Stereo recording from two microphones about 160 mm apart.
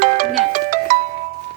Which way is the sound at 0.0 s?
50° right (ahead or behind).